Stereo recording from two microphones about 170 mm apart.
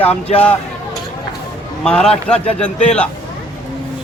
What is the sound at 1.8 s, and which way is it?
Speech, 5° left (ahead or behind).